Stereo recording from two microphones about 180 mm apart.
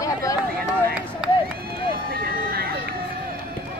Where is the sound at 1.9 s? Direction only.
55° right (ahead or behind).